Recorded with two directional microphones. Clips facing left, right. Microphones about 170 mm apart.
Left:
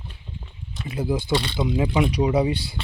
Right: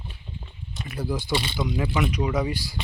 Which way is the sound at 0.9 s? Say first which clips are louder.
Left 4 dB; 20° left (ahead or behind).